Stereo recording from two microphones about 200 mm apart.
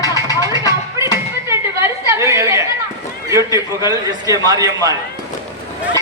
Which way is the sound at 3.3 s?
15° right (ahead or behind).